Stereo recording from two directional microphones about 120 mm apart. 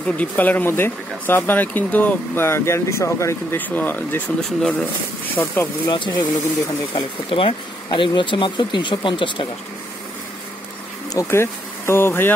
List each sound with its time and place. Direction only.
0.0 s speech: 10° left (ahead or behind)
4.4 s speech: 5° left (ahead or behind)
5.3 s speech: 20° left (ahead or behind)
5.9 s speech: 40° left (ahead or behind)
11.1 s speech: 20° left (ahead or behind)